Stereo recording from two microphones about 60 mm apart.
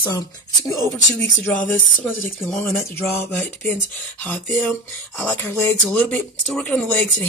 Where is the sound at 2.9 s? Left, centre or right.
Left.